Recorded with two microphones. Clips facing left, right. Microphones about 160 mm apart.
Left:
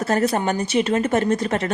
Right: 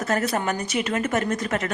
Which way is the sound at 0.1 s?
30° left (ahead or behind).